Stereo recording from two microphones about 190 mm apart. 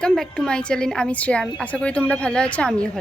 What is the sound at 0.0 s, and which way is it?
A woman's voice, 5° left (ahead or behind).